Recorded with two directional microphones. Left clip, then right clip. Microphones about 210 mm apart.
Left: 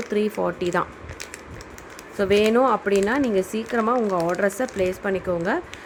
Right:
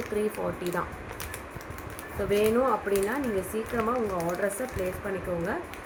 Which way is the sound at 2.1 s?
50° left (ahead or behind).